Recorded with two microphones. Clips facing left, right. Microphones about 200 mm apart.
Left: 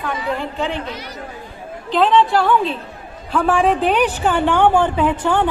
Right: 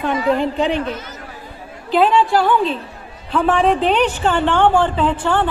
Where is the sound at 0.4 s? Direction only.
15° right (ahead or behind).